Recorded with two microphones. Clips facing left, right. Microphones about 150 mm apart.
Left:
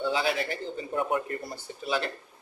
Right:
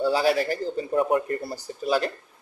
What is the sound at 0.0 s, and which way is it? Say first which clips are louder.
Speech: right 6 dB; 40° right (ahead or behind).